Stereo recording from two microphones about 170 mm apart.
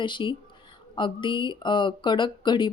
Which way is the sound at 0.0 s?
30° left (ahead or behind).